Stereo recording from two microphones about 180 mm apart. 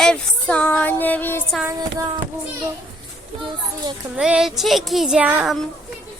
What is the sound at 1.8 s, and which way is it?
Child singing, 20° right (ahead or behind).